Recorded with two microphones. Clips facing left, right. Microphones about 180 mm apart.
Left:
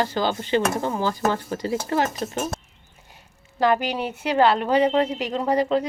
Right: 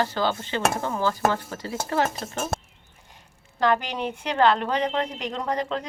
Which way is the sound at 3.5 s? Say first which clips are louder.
Left 2 dB; 10° left (ahead or behind).